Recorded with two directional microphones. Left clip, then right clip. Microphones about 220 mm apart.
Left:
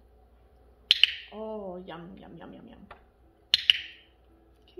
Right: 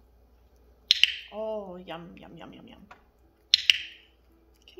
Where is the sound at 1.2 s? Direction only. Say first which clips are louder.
Right 4 dB; 45° right (ahead or behind).